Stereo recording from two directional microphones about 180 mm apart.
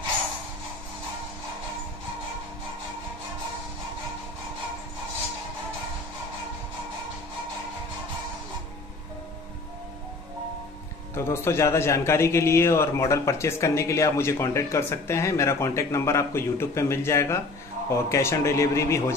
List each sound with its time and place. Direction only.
11.1 s a man's voice: 15° left (ahead or behind)